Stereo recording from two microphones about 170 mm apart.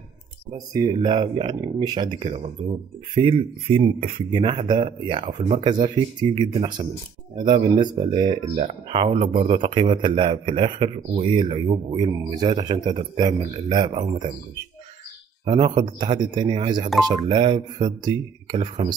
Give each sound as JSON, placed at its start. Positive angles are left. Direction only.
{"t": 0.5, "sound": "speech", "side_deg": -25}
{"t": 15.4, "sound": "speech", "side_deg": -30}